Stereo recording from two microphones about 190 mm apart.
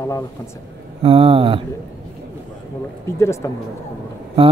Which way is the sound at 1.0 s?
30° right (ahead or behind).